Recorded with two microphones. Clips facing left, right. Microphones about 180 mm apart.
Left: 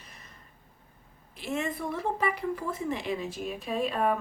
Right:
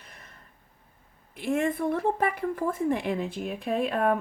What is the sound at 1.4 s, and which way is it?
A woman's voice, 55° right (ahead or behind).